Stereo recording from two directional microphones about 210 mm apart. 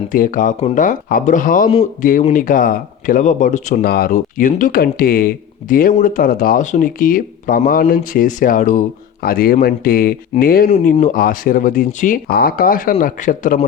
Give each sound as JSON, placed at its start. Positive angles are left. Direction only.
{"t": 0.1, "sound": "a man's voice", "side_deg": 40}
{"t": 10.7, "sound": "a man's voice", "side_deg": 30}